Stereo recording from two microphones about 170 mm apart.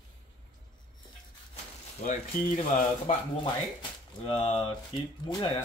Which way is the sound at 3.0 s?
30° left (ahead or behind).